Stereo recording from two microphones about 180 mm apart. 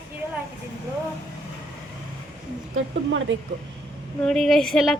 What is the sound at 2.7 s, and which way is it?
Speech, 90° right.